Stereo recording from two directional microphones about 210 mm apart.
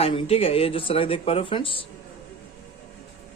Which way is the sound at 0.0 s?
25° left (ahead or behind).